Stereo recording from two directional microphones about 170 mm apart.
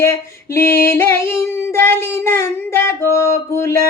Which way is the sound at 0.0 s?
15° left (ahead or behind).